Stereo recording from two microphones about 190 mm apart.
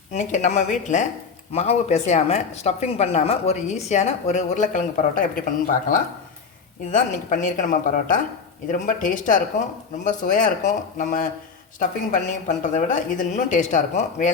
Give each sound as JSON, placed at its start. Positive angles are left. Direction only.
{"t": 0.1, "sound": "speech", "side_deg": 35}
{"t": 6.9, "sound": "speech", "side_deg": 40}